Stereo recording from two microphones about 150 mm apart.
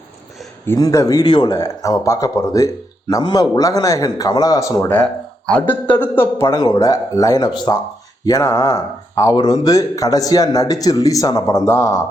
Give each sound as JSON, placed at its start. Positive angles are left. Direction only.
{"t": 0.6, "sound": "a man's voice", "side_deg": 20}
{"t": 5.5, "sound": "a man's voice", "side_deg": 10}